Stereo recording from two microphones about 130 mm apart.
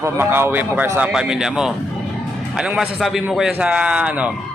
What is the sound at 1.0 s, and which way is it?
A man's voice, 5° right (ahead or behind).